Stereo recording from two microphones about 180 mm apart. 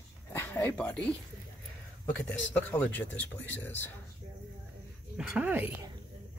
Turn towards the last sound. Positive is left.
turn(degrees=-10)  # may be behind; listen again after turning